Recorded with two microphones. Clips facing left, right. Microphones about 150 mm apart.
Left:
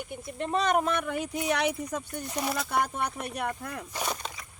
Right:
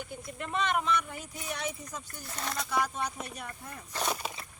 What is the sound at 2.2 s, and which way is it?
Speech, 15° left (ahead or behind).